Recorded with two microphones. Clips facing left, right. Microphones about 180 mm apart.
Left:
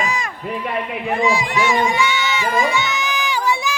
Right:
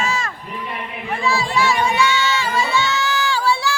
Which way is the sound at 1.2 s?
15° left (ahead or behind).